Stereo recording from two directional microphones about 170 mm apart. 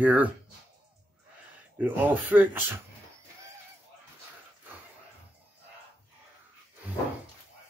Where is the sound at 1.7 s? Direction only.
10° right (ahead or behind).